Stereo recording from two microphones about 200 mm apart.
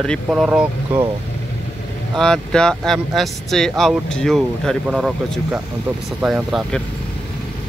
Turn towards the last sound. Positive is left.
turn(degrees=0)  # may be behind; listen again after turning